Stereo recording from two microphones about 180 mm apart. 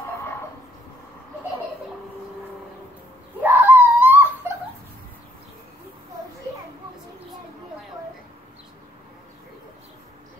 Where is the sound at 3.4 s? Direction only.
10° right (ahead or behind).